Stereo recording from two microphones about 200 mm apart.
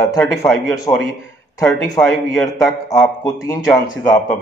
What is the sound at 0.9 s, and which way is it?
Speech, 25° left (ahead or behind).